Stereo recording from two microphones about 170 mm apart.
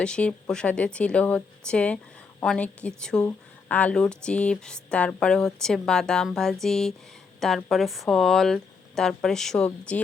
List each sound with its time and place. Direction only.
0.0 s speech: 5° left (ahead or behind)